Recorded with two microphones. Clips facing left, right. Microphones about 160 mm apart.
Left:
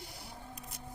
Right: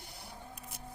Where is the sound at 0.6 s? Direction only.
Centre (ahead or behind).